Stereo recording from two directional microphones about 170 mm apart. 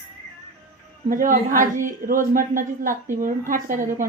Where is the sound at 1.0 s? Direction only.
50° right (ahead or behind).